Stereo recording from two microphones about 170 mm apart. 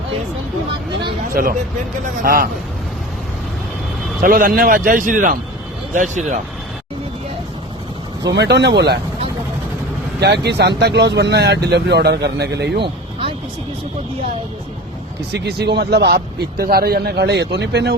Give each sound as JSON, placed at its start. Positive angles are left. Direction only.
{"t": 1.3, "sound": "speech", "side_deg": -55}
{"t": 4.2, "sound": "a man's voice", "side_deg": -55}
{"t": 8.3, "sound": "speech", "side_deg": -90}
{"t": 10.2, "sound": "speech", "side_deg": -75}
{"t": 12.8, "sound": "a sound", "side_deg": -30}
{"t": 15.3, "sound": "speech", "side_deg": -80}